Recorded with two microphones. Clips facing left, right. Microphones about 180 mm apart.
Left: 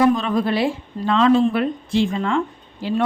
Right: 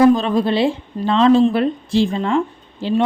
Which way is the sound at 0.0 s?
30° right (ahead or behind).